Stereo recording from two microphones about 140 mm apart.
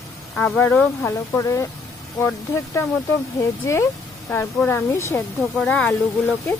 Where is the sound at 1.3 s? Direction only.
20° left (ahead or behind).